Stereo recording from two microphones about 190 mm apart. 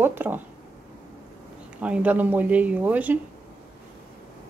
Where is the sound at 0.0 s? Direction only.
10° right (ahead or behind).